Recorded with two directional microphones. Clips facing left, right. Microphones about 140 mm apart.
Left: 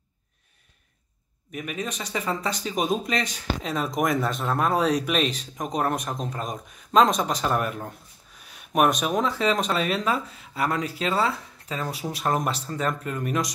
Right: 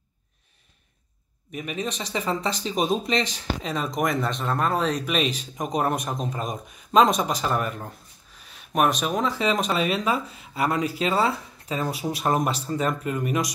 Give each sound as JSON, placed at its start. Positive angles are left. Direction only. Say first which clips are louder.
{"t": 1.8, "sound": "speech", "louder": "right 2 dB", "side_deg": -30}
{"t": 3.6, "sound": "speech", "louder": "left 1 dB", "side_deg": 0}